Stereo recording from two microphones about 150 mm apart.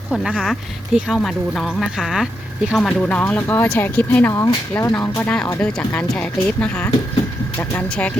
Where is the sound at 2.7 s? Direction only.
10° left (ahead or behind).